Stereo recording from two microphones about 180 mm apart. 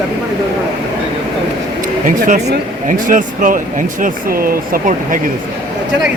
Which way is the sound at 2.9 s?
45° right (ahead or behind).